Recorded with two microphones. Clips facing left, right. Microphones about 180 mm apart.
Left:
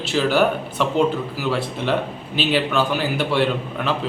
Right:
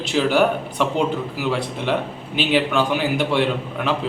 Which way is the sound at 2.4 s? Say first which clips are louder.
Right 1 dB; 15° right (ahead or behind).